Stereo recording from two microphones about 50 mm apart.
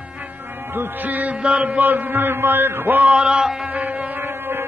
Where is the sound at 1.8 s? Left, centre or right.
Right.